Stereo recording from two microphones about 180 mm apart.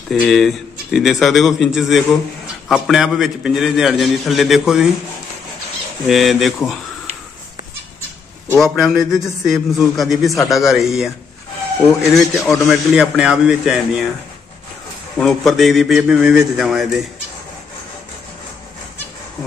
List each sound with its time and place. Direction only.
0.1 s a man's voice: centre (ahead or behind)
6.0 s a man's voice: centre (ahead or behind)
8.5 s a man's voice: centre (ahead or behind)
15.1 s a man's voice: centre (ahead or behind)